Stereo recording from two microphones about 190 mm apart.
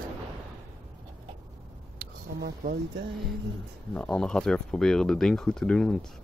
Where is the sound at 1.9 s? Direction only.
50° right (ahead or behind).